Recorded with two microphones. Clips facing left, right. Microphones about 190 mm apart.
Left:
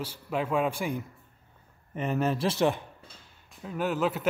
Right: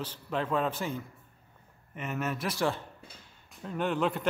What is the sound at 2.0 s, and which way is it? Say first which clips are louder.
Speech: left 6 dB; 35° left (ahead or behind).